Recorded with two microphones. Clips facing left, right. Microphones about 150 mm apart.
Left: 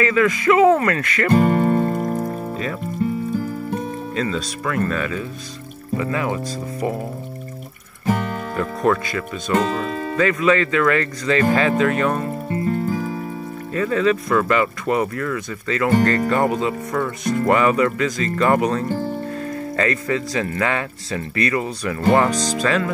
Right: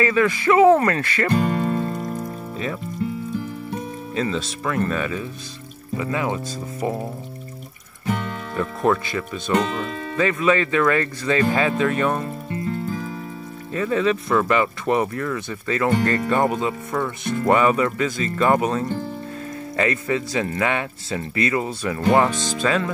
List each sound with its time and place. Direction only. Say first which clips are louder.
0.0 s speech: left 1 dB; 25° right (ahead or behind)
1.3 s music: left 7 dB; 55° left (ahead or behind)
4.1 s speech: right 1 dB; 20° right (ahead or behind)
8.8 s speech: left 1 dB; 15° right (ahead or behind)
9.8 s music: left 5 dB; 50° left (ahead or behind)
10.1 s speech: left 1 dB; 20° right (ahead or behind)
12.4 s music: left 7 dB; 55° left (ahead or behind)
13.7 s speech: left 2 dB; 20° right (ahead or behind)